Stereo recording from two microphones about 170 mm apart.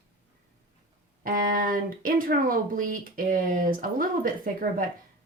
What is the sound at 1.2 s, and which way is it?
Speech, 55° right (ahead or behind).